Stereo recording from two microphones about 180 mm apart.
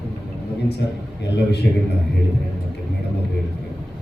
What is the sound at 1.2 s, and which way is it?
Speech, 70° left (ahead or behind).